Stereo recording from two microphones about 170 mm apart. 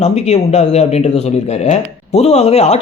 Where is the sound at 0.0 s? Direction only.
40° left (ahead or behind).